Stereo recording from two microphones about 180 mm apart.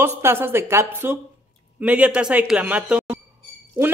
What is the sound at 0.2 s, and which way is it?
A woman's voice, 15° right (ahead or behind).